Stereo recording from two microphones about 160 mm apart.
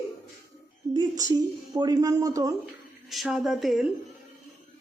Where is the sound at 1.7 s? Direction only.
25° right (ahead or behind).